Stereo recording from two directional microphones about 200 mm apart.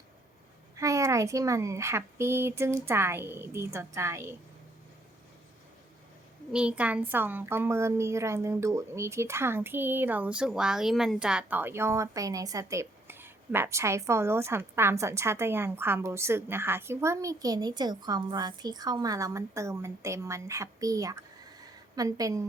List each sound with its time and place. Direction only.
0.8 s a woman's voice: 15° right (ahead or behind)
6.5 s a woman's voice: 5° right (ahead or behind)